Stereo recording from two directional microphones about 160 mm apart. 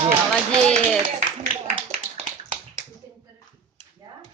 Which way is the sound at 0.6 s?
5° left (ahead or behind).